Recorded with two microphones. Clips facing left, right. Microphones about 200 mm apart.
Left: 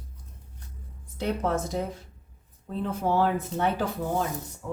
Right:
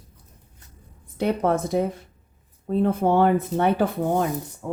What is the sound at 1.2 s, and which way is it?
Speech, 60° right (ahead or behind).